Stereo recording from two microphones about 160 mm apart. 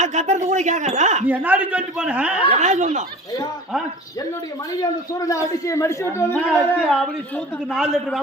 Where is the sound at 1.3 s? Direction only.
10° right (ahead or behind).